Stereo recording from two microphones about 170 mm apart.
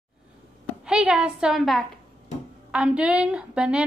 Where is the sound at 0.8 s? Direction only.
5° right (ahead or behind).